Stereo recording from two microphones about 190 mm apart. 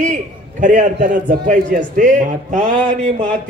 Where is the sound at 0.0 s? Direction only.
40° right (ahead or behind).